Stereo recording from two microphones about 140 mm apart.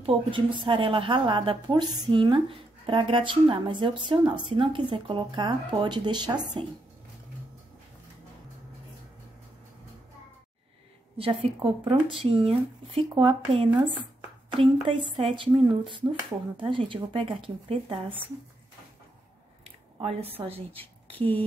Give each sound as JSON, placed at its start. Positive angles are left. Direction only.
{"t": 0.0, "sound": "a woman's voice", "side_deg": -35}
{"t": 11.1, "sound": "a woman's voice", "side_deg": -40}
{"t": 19.6, "sound": "squish", "side_deg": -45}
{"t": 20.4, "sound": "speech", "side_deg": -45}
{"t": 21.1, "sound": "speech", "side_deg": 10}